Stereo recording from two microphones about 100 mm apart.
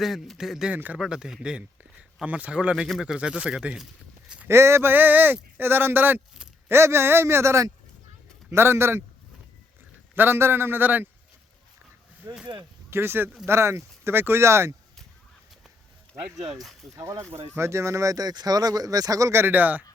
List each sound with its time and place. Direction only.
0.0 s a man's voice: centre (ahead or behind)
0.7 s speech: 15° right (ahead or behind)
0.9 s speech: 5° right (ahead or behind)
4.4 s speech: 25° right (ahead or behind)
10.2 s speech: 25° right (ahead or behind)
12.2 s speech: 35° right (ahead or behind)
12.9 s speech: 25° right (ahead or behind)
16.9 s speech: 30° right (ahead or behind)